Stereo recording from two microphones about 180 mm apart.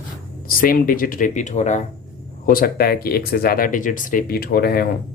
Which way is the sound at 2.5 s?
55° left (ahead or behind).